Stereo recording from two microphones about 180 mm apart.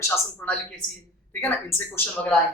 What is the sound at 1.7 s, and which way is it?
Speech, 10° left (ahead or behind).